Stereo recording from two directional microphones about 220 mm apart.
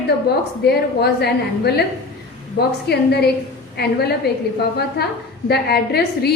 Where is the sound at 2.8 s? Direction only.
45° left (ahead or behind).